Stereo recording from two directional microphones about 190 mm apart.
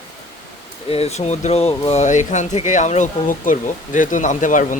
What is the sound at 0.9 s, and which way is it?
Speech, 35° left (ahead or behind).